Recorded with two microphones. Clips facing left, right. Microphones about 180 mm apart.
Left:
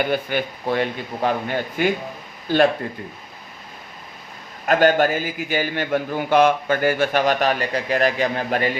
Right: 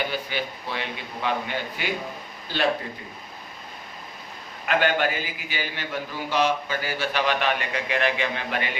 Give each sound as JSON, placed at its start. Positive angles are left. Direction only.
{"t": 0.1, "sound": "a man's voice", "side_deg": 50}
{"t": 4.6, "sound": "a man's voice", "side_deg": 40}